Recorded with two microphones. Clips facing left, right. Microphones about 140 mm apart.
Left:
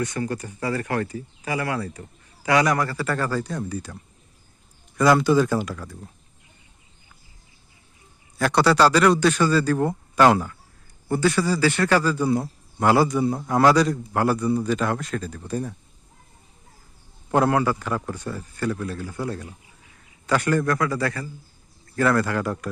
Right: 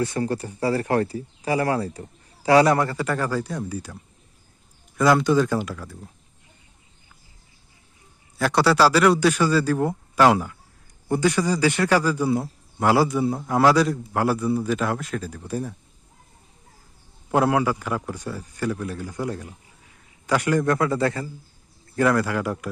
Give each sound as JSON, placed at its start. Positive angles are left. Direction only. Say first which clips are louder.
{"t": 0.0, "sound": "speech", "louder": "right 2 dB", "side_deg": -30}
{"t": 4.9, "sound": "speech", "louder": "left 1 dB", "side_deg": 0}
{"t": 8.4, "sound": "speech", "louder": "even", "side_deg": -5}
{"t": 17.3, "sound": "speech", "louder": "even", "side_deg": -10}
{"t": 20.7, "sound": "a man's voice", "louder": "right 2 dB", "side_deg": -25}